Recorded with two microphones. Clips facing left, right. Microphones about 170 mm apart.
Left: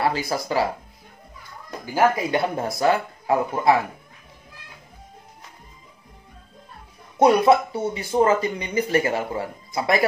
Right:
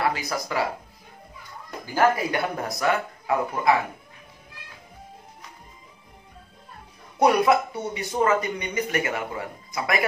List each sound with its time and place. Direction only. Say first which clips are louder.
0.0 s speech: left 3 dB; 30° left (ahead or behind)
2.3 s speech: left 4 dB; 25° left (ahead or behind)
7.2 s speech: left 3 dB; 25° left (ahead or behind)